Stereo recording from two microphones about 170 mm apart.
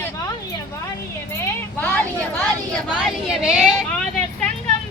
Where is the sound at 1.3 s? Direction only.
10° left (ahead or behind).